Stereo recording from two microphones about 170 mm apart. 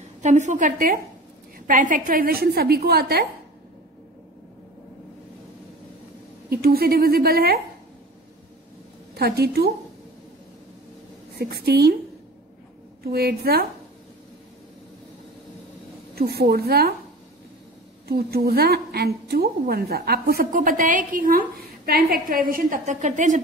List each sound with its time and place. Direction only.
0.2 s a woman's voice: 45° right (ahead or behind); by 3.3 s 65° right (ahead or behind)
6.5 s a woman's voice: 65° right (ahead or behind)
9.1 s a woman's voice: 70° right (ahead or behind)
11.3 s a woman's voice: 65° right (ahead or behind)
13.0 s a woman's voice: 70° right (ahead or behind)
16.2 s a woman's voice: 70° right (ahead or behind)
18.0 s a woman's voice: 65° right (ahead or behind); by 23.4 s 45° right (ahead or behind)